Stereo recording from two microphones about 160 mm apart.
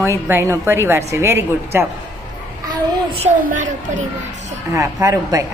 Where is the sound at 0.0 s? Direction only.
15° right (ahead or behind).